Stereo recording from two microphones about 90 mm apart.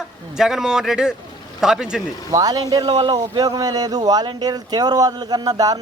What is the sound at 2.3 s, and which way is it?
A man's voice, 45° right (ahead or behind).